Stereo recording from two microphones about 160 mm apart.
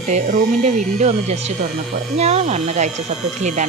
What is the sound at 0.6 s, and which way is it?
Speech, 45° right (ahead or behind).